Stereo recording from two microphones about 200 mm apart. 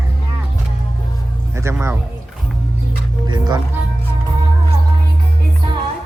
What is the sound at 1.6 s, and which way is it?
Speech, 15° right (ahead or behind).